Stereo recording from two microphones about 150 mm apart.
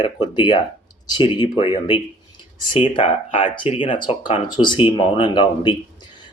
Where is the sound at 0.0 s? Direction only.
30° left (ahead or behind).